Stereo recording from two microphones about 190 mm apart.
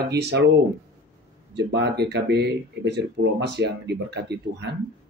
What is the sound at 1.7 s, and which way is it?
Speech, 65° right (ahead or behind).